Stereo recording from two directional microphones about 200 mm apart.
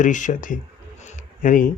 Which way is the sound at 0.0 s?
40° left (ahead or behind).